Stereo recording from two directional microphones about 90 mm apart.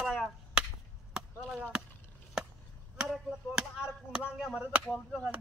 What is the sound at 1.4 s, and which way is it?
Speech, 10° right (ahead or behind).